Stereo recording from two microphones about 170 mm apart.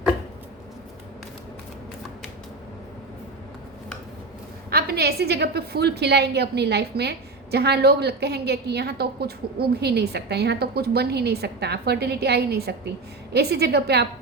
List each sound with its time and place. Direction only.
4.7 s a woman's voice: 70° right (ahead or behind)